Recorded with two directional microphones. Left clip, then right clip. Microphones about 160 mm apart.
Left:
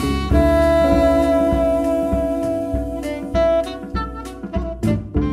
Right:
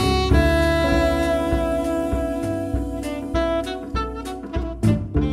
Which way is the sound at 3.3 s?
50° left (ahead or behind).